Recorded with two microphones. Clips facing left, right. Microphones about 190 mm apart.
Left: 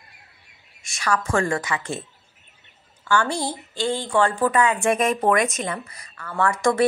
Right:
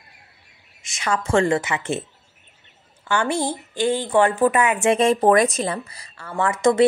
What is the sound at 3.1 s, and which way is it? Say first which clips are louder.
A woman's voice: right 1 dB; 20° right (ahead or behind).